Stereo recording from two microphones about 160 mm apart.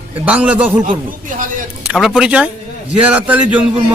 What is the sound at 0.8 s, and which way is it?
Speech, 55° right (ahead or behind).